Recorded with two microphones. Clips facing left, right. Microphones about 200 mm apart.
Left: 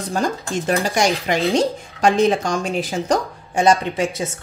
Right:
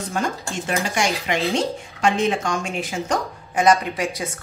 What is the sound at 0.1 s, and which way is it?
Speech, 35° left (ahead or behind).